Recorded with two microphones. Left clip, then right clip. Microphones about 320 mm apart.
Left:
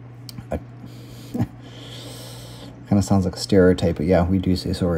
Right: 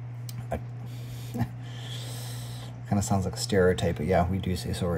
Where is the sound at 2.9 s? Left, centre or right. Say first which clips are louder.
Left 7 dB; centre.